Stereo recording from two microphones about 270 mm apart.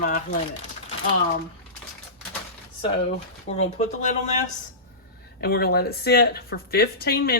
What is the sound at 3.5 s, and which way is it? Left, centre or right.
Speech, left.